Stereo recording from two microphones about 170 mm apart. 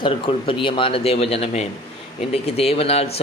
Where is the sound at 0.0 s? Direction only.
30° left (ahead or behind).